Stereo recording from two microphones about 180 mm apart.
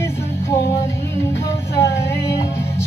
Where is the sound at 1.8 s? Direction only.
15° left (ahead or behind).